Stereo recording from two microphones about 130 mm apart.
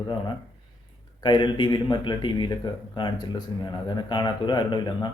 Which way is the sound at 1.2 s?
35° left (ahead or behind).